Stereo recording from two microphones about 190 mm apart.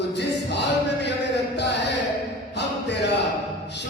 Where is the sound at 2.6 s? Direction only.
65° left (ahead or behind).